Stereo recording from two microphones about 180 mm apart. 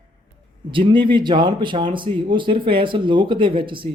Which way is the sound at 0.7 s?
30° right (ahead or behind).